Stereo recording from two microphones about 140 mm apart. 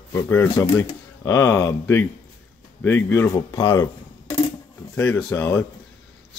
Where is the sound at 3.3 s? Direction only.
30° left (ahead or behind).